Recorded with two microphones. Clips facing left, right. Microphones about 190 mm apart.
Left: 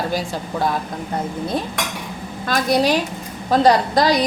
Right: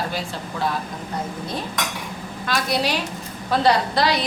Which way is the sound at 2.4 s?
45° left (ahead or behind).